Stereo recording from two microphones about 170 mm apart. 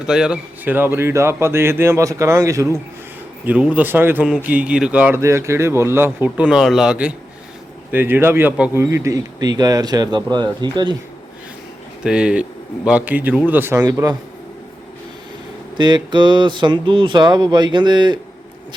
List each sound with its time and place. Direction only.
0.1 s speech: 5° right (ahead or behind)
3.4 s speech: 10° right (ahead or behind); by 10.9 s 25° right (ahead or behind)
12.0 s speech: 5° right (ahead or behind); by 14.2 s 20° right (ahead or behind)
15.8 s speech: 25° right (ahead or behind)